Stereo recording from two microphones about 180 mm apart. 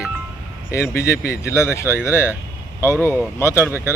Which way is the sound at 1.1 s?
60° left (ahead or behind).